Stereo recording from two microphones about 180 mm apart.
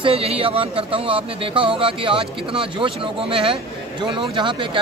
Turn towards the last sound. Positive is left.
turn(degrees=-25)  # may be behind; listen again after turning